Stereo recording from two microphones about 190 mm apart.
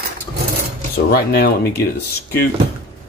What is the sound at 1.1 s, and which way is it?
Speech, 55° left (ahead or behind).